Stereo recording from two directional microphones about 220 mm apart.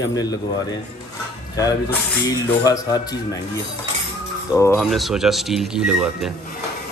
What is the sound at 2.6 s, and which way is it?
Wind chime, 15° left (ahead or behind).